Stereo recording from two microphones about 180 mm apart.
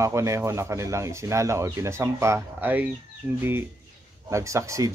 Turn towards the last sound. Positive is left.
turn(degrees=-15)  # may be behind; listen again after turning